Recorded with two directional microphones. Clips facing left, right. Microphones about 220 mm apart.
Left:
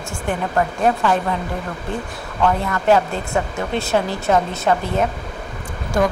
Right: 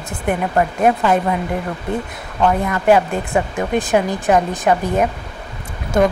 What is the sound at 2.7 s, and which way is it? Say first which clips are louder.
Speech: right 2 dB; 15° right (ahead or behind).